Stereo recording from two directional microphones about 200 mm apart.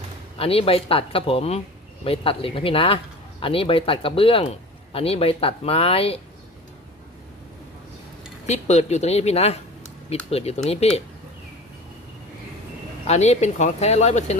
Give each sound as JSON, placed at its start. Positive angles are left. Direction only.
{"t": 0.3, "sound": "speech", "side_deg": 30}
{"t": 8.4, "sound": "speech", "side_deg": 35}
{"t": 13.1, "sound": "speech", "side_deg": 35}